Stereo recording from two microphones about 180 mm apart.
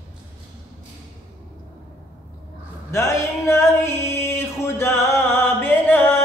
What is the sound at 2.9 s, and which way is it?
Music, 15° left (ahead or behind).